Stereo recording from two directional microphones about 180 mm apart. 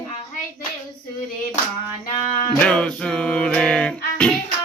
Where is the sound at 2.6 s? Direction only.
5° left (ahead or behind).